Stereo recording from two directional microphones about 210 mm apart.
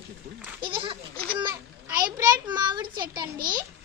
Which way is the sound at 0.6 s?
25° right (ahead or behind).